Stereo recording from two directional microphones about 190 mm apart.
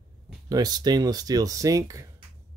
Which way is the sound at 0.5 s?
20° right (ahead or behind).